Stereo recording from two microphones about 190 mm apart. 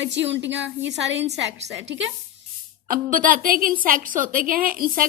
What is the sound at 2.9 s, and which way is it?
A woman's voice, 45° right (ahead or behind).